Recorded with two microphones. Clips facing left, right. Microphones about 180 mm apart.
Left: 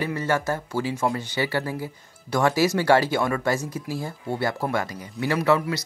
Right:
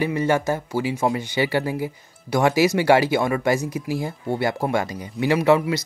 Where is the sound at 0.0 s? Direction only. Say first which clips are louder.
Right 4 dB; 15° right (ahead or behind).